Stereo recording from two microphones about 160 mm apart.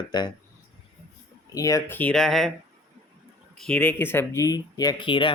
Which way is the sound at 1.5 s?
20° left (ahead or behind).